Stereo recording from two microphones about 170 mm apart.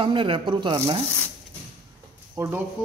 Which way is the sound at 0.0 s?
30° right (ahead or behind).